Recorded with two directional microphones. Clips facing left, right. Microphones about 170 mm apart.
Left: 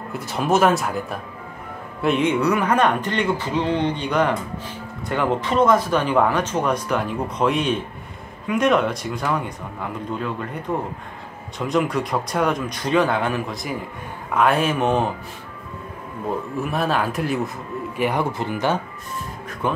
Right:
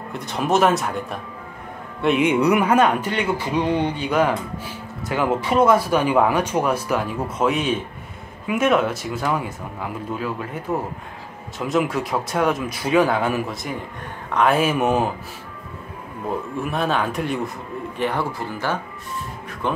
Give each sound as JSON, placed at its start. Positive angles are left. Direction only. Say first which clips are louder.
{"t": 0.1, "sound": "a man's voice", "louder": "even", "side_deg": 0}
{"t": 2.2, "sound": "speech", "louder": "right 3 dB", "side_deg": -15}
{"t": 16.6, "sound": "speech", "louder": "even", "side_deg": 0}
{"t": 19.6, "sound": "speech", "louder": "left 1 dB", "side_deg": 10}